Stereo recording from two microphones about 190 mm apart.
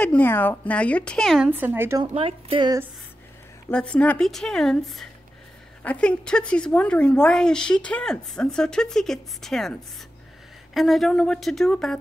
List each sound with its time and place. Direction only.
0.0 s a woman's voice: 10° left (ahead or behind)
1.5 s a woman's voice: 10° right (ahead or behind)
2.1 s speech: 30° right (ahead or behind)
3.7 s a woman's voice: 5° left (ahead or behind)